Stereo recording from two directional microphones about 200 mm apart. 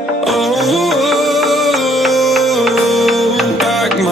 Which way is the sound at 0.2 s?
Centre (ahead or behind).